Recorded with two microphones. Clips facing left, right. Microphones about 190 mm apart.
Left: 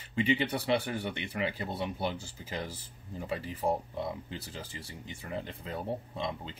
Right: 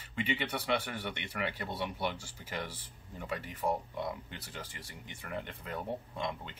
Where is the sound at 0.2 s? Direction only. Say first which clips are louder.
Left 6 dB; 30° left (ahead or behind).